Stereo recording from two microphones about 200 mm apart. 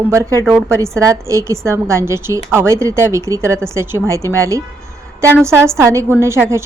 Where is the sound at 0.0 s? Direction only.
15° right (ahead or behind).